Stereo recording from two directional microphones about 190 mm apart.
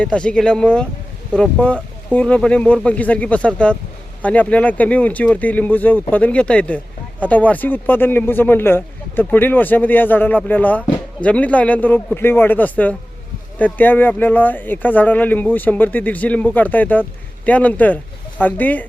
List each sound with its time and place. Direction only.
0.0 s speech: 5° left (ahead or behind)